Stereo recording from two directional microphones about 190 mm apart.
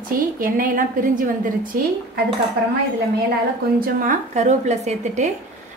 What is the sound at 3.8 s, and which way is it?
A woman's voice, 45° right (ahead or behind).